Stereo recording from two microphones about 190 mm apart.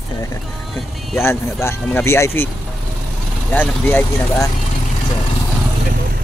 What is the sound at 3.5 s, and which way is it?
Speech, 10° left (ahead or behind).